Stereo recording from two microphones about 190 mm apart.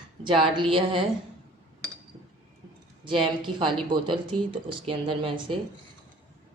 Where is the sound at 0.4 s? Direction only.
25° right (ahead or behind).